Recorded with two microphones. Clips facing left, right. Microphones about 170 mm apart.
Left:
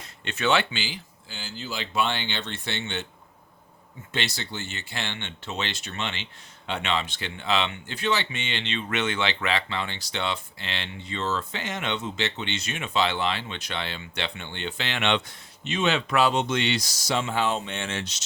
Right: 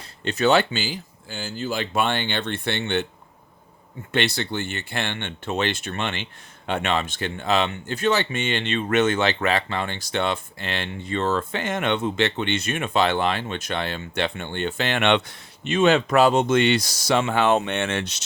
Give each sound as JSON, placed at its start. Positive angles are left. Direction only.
{"t": 0.0, "sound": "speech", "side_deg": -35}
{"t": 4.1, "sound": "speech", "side_deg": -60}